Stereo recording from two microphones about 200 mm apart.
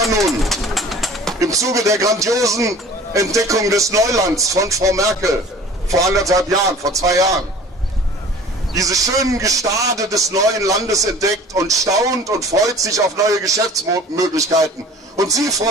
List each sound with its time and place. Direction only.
0.2 s bird: centre (ahead or behind)
1.4 s a man's voice: 15° right (ahead or behind)
8.7 s a man's voice: 15° right (ahead or behind)